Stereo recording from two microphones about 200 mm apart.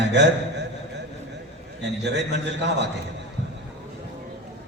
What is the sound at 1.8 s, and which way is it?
A man's voice, 60° right (ahead or behind).